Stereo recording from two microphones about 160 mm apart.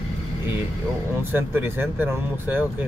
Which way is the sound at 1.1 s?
15° right (ahead or behind).